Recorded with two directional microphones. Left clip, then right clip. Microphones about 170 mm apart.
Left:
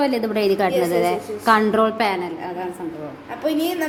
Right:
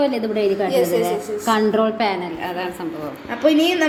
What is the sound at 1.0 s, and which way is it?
A woman's voice, 15° left (ahead or behind).